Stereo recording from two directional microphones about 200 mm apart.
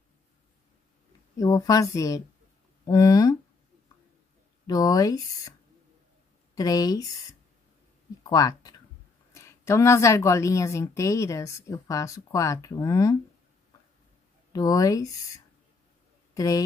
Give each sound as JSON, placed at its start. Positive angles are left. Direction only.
{"t": 1.4, "sound": "a woman's voice", "side_deg": 15}
{"t": 4.6, "sound": "speech", "side_deg": 20}
{"t": 6.5, "sound": "speech", "side_deg": 20}
{"t": 8.2, "sound": "a sound", "side_deg": 20}
{"t": 9.3, "sound": "a woman's voice", "side_deg": 15}
{"t": 14.5, "sound": "a woman's voice", "side_deg": 20}